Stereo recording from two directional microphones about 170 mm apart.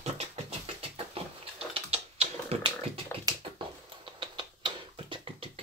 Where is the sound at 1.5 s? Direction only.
35° right (ahead or behind).